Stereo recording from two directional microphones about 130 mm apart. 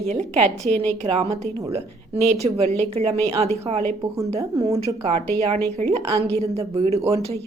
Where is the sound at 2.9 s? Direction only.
55° right (ahead or behind).